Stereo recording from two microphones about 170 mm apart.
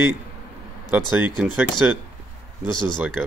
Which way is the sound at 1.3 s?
5° right (ahead or behind).